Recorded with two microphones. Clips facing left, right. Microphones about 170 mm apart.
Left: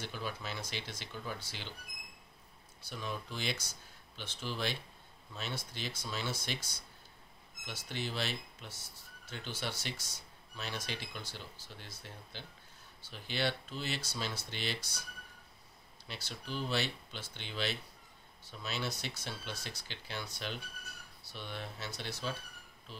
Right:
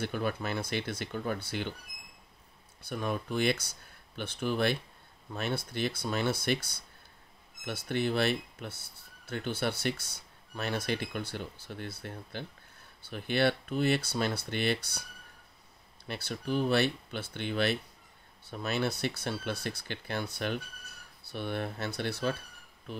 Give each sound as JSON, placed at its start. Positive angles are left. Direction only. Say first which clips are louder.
{"t": 0.0, "sound": "speech", "louder": "right 9 dB", "side_deg": -55}
{"t": 2.8, "sound": "speech", "louder": "right 8 dB", "side_deg": -55}
{"t": 16.1, "sound": "speech", "louder": "right 10 dB", "side_deg": -55}